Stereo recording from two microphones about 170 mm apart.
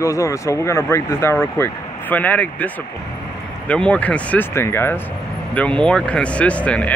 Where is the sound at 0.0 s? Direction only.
15° left (ahead or behind).